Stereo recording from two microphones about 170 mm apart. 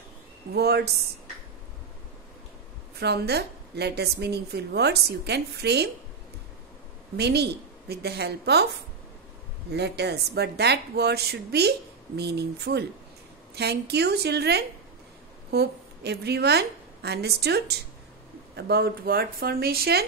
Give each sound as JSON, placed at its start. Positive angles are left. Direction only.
{"t": 0.5, "sound": "a woman's voice", "side_deg": -70}
{"t": 3.0, "sound": "a woman's voice", "side_deg": -75}
{"t": 7.2, "sound": "a woman's voice", "side_deg": -75}
{"t": 9.7, "sound": "a woman's voice", "side_deg": -80}